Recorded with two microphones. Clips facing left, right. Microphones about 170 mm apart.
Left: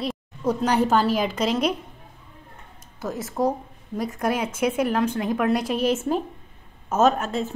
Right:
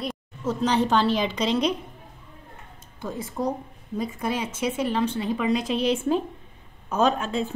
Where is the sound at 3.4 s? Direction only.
35° left (ahead or behind).